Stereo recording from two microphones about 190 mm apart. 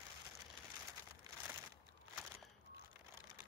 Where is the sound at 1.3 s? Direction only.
20° right (ahead or behind).